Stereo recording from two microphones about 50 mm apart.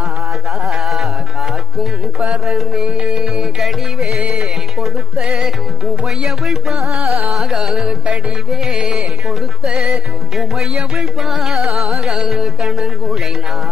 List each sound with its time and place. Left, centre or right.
0.7 s music: centre
2.1 s music: centre
3.5 s music: centre
5.2 s music: centre
8.7 s music: centre
9.8 s music: centre